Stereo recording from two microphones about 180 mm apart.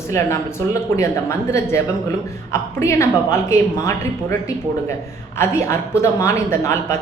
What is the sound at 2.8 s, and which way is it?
Speech, 15° left (ahead or behind).